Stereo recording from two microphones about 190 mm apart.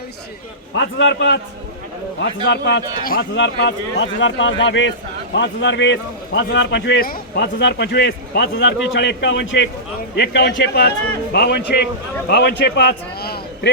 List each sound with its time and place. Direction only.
0.8 s a man's voice: 70° left (ahead or behind)
2.5 s a man's voice: 60° left (ahead or behind)
3.3 s a man's voice: 70° left (ahead or behind)